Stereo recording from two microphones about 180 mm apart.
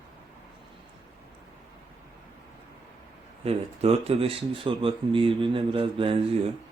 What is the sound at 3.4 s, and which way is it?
Speech, 35° right (ahead or behind).